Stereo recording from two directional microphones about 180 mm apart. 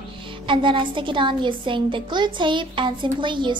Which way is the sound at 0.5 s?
30° right (ahead or behind).